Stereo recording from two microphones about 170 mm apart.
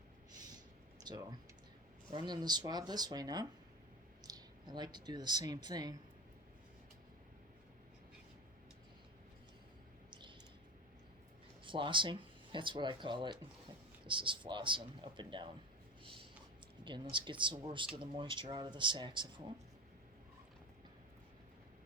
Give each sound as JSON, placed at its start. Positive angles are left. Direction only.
{"t": 1.0, "sound": "speech", "side_deg": -25}
{"t": 10.1, "sound": "a sound", "side_deg": -30}
{"t": 11.6, "sound": "speech", "side_deg": -30}
{"t": 16.8, "sound": "speech", "side_deg": -30}